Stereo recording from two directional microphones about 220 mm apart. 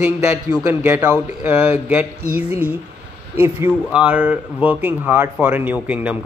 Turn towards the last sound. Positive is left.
turn(degrees=-5)  # may be behind; listen again after turning